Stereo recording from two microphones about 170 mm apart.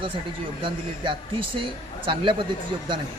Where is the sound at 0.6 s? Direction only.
30° right (ahead or behind).